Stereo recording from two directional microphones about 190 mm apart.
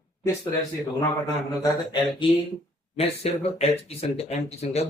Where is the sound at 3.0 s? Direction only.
35° left (ahead or behind).